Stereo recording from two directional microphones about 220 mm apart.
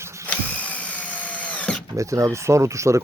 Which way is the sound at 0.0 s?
15° right (ahead or behind).